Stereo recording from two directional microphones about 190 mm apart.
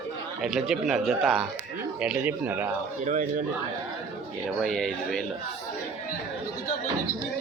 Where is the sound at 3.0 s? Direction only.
40° right (ahead or behind).